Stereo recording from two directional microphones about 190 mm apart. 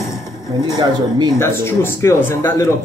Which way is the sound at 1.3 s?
10° left (ahead or behind).